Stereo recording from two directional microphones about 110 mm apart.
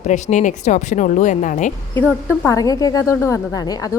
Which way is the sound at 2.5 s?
30° left (ahead or behind).